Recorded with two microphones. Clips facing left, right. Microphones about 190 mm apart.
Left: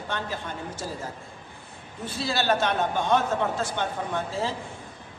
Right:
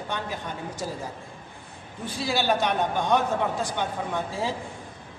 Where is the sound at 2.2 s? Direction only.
15° right (ahead or behind).